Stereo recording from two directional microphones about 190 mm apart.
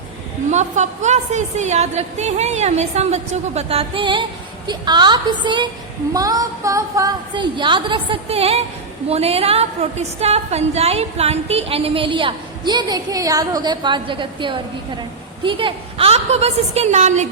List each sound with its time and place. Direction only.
0.5 s a woman's voice: 40° right (ahead or behind)